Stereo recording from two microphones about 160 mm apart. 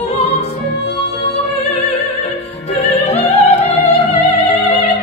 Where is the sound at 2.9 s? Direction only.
40° left (ahead or behind).